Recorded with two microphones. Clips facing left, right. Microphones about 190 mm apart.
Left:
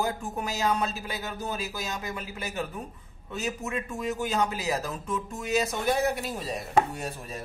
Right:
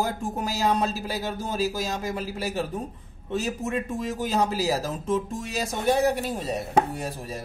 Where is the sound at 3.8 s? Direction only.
30° right (ahead or behind).